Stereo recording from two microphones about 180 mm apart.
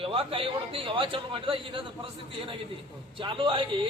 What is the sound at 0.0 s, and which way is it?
A man's voice, 30° right (ahead or behind).